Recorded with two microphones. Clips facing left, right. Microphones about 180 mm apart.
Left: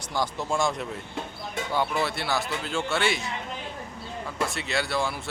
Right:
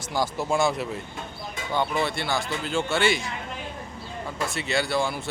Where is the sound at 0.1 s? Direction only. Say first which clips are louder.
Right 3 dB; 5° right (ahead or behind).